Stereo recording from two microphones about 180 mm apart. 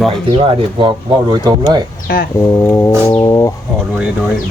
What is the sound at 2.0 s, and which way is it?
Speech, 55° left (ahead or behind).